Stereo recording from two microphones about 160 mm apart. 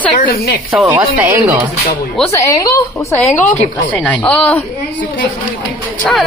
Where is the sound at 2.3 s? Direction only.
20° left (ahead or behind).